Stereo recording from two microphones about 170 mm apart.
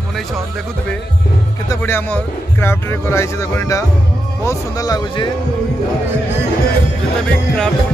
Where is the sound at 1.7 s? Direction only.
15° left (ahead or behind).